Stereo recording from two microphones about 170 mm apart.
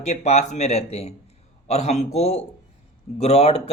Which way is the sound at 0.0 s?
40° left (ahead or behind).